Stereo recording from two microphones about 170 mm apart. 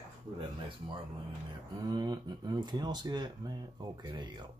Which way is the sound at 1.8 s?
25° right (ahead or behind).